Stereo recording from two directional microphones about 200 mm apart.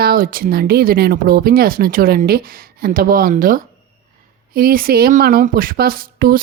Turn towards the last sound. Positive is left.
turn(degrees=-45)  # may be behind; listen again after turning